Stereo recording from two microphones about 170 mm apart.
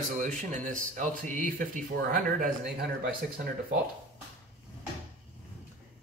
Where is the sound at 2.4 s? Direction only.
60° right (ahead or behind).